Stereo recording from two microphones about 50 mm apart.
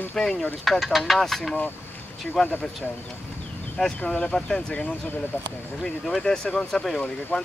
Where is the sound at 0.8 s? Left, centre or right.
Centre.